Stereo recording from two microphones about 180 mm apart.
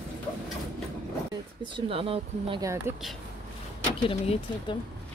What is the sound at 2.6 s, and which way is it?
Speech, 15° right (ahead or behind).